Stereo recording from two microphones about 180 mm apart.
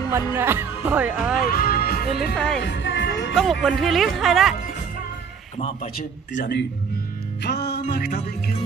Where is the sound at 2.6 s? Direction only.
80° left.